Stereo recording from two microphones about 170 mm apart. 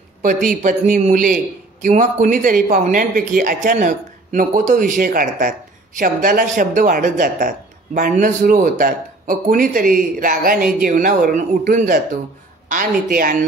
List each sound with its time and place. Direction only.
0.2 s a man's voice: 50° right (ahead or behind)